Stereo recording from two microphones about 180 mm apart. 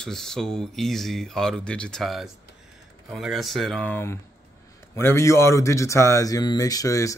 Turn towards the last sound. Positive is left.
turn(degrees=20)  # may be behind; listen again after turning